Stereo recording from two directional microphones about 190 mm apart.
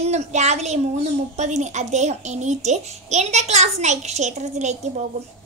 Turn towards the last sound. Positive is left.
turn(degrees=-35)  # may be behind; listen again after turning